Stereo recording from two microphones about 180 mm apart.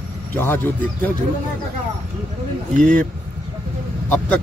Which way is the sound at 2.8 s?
50° right (ahead or behind).